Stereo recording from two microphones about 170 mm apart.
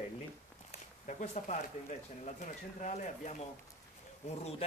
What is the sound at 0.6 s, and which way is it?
Speech, 40° left (ahead or behind).